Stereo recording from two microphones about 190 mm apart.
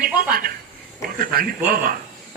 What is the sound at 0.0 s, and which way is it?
A woman's voice, 50° right (ahead or behind).